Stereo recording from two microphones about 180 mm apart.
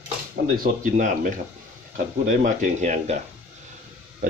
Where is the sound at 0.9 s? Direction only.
45° right (ahead or behind).